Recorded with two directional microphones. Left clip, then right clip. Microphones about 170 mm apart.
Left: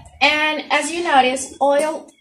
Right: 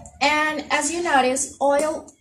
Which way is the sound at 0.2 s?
5° right (ahead or behind).